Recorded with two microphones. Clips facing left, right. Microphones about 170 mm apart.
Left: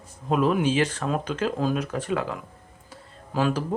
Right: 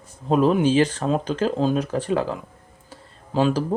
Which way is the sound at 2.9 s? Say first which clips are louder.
Right 4 dB; 30° right (ahead or behind).